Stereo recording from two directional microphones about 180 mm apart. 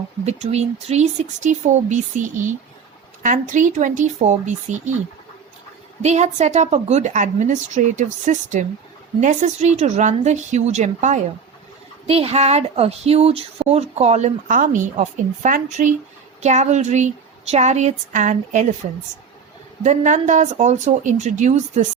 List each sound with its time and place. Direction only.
0.3 s a woman's voice: 35° right (ahead or behind)
3.2 s speech: 45° right (ahead or behind)
6.0 s a woman's voice: 40° right (ahead or behind)
19.8 s a woman's voice: 40° right (ahead or behind)